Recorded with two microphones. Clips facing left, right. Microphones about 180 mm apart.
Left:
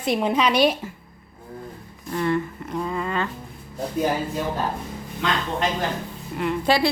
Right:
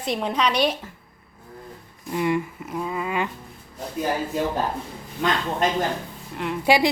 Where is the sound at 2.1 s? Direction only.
15° right (ahead or behind).